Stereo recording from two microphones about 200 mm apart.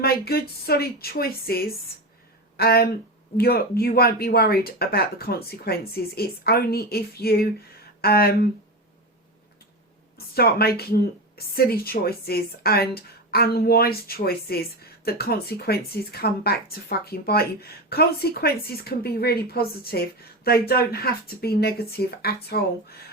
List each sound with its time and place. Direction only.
0.0 s a woman's voice: 50° left (ahead or behind)
10.3 s a woman's voice: 50° left (ahead or behind)